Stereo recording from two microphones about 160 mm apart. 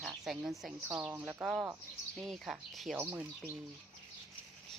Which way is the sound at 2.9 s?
10° right (ahead or behind).